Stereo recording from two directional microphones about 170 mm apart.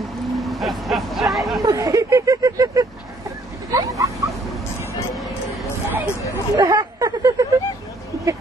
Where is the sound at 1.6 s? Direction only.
20° right (ahead or behind).